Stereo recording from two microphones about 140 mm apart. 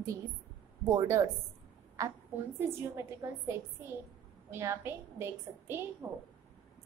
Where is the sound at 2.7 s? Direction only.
20° right (ahead or behind).